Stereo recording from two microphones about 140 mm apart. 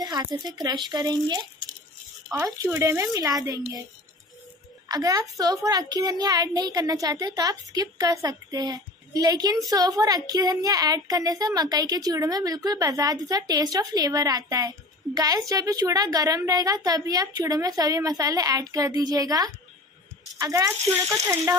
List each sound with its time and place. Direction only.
0.0 s a child's voice: 30° right (ahead or behind)
4.8 s a child's voice: 25° right (ahead or behind)